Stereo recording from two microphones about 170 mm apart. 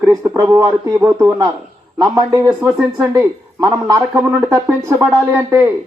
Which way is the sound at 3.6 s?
20° right (ahead or behind).